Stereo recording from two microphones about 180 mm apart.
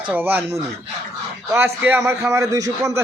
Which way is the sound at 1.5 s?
10° right (ahead or behind).